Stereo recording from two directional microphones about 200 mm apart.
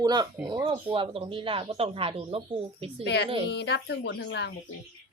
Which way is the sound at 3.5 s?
60° left (ahead or behind).